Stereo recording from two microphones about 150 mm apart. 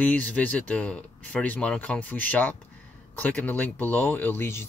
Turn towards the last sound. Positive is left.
turn(degrees=15)  # may be behind; listen again after turning